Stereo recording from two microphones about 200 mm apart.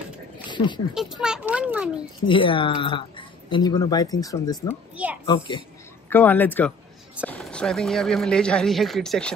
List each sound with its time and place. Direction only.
0.5 s a sound: 25° left (ahead or behind)
0.9 s a child's voice: 5° right (ahead or behind)
2.2 s speech: 25° left (ahead or behind)
4.9 s a sound: 5° right (ahead or behind)
5.2 s a child's voice: 20° left (ahead or behind)
6.0 s speech: 10° left (ahead or behind)